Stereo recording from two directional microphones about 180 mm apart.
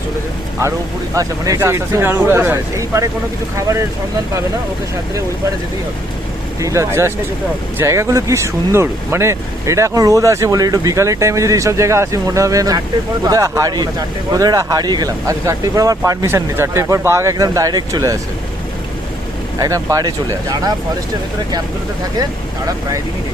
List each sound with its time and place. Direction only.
1.1 s speech: 20° right (ahead or behind)
6.6 s speech: 15° right (ahead or behind)
19.5 s speech: 20° right (ahead or behind)
22.2 s speech: 20° right (ahead or behind)